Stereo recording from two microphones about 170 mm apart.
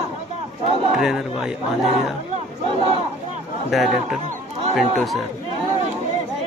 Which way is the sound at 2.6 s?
30° right (ahead or behind).